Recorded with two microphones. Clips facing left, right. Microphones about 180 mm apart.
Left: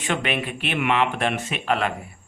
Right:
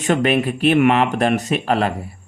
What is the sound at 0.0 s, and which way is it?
A man's voice, 40° right (ahead or behind).